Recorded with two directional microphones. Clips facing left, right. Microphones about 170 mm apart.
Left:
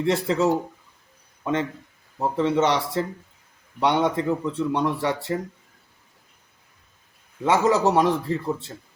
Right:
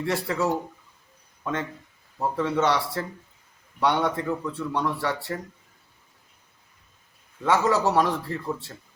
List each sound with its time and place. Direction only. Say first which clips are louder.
0.0 s speech: left 5 dB; 20° left (ahead or behind)
2.1 s speech: left 3 dB; 20° left (ahead or behind)
7.4 s speech: left 3 dB; 20° left (ahead or behind)